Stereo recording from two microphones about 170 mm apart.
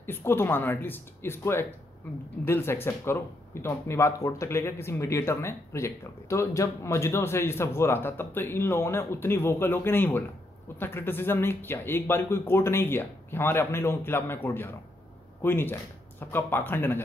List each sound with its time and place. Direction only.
0.0 s speech: 15° left (ahead or behind)